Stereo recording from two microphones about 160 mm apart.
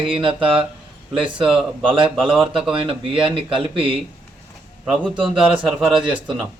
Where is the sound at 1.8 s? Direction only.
30° right (ahead or behind).